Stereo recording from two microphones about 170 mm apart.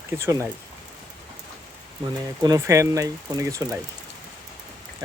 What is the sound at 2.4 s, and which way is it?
Speech, 20° right (ahead or behind).